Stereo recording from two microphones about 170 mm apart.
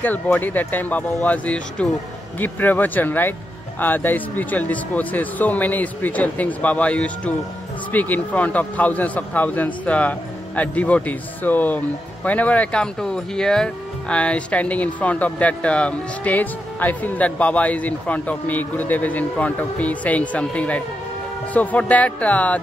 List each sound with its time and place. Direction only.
0.0 s speech: 10° left (ahead or behind)